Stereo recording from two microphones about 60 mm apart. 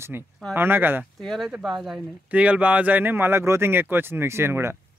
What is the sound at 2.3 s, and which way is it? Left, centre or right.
Speech, right.